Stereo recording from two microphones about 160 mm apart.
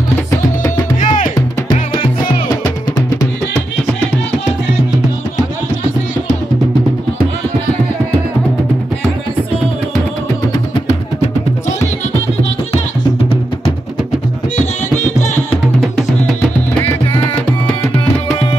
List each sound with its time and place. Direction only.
1.0 s music: 55° left (ahead or behind)